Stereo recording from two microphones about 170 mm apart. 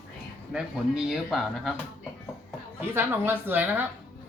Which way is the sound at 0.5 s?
5° right (ahead or behind).